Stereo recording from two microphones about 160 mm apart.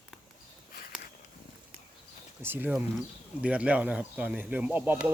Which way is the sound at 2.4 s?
15° right (ahead or behind).